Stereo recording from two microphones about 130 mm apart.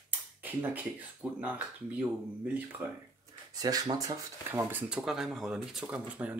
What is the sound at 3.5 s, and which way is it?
Speech, 30° right (ahead or behind).